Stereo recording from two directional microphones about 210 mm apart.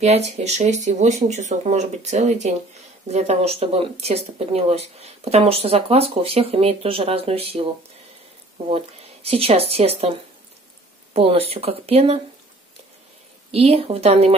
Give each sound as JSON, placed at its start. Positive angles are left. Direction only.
{"t": 0.0, "sound": "speech", "side_deg": -30}
{"t": 11.1, "sound": "speech", "side_deg": -30}
{"t": 13.5, "sound": "speech", "side_deg": -30}